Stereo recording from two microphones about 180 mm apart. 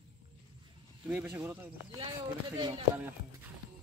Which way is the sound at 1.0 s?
10° right (ahead or behind).